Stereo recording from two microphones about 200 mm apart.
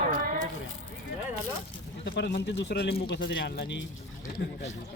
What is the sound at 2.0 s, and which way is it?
Speech, 60° left (ahead or behind).